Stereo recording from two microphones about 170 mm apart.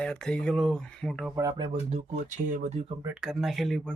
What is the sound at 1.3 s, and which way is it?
Speech, 20° right (ahead or behind).